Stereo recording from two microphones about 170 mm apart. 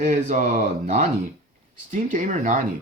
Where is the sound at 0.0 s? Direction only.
45° right (ahead or behind).